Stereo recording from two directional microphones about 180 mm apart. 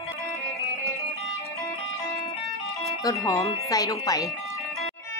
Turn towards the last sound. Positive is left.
turn(degrees=20)  # may be behind; listen again after turning